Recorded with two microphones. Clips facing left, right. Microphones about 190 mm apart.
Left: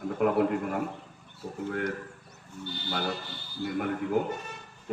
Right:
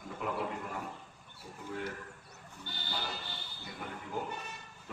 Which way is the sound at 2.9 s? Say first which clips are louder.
Left 9 dB; 65° left (ahead or behind).